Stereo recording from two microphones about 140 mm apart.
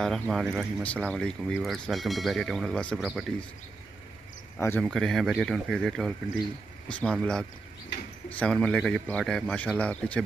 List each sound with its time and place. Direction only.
0.0 s speech: centre (ahead or behind)
3.0 s speech: 5° right (ahead or behind)
4.6 s speech: 15° left (ahead or behind)
4.8 s speech: centre (ahead or behind)